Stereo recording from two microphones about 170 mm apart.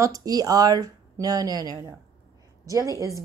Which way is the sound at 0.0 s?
20° right (ahead or behind).